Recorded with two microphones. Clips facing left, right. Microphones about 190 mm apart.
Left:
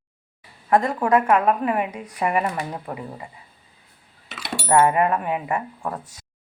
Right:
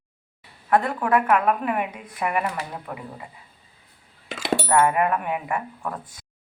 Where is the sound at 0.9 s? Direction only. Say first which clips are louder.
Left 2 dB; 25° left (ahead or behind).